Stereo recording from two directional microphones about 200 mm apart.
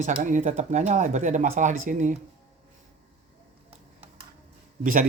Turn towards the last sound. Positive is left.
turn(degrees=-40)  # may be behind; listen again after turning